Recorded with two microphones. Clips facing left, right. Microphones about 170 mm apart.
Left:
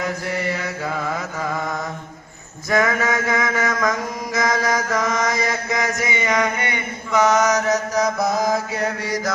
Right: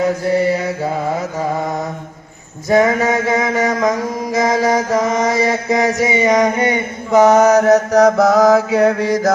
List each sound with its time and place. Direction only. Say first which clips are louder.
0.0 s mantra: right 9 dB; 30° right (ahead or behind); by 9.3 s 55° right (ahead or behind)